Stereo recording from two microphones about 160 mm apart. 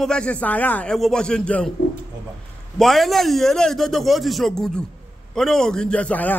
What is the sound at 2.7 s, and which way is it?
A man's voice, centre (ahead or behind).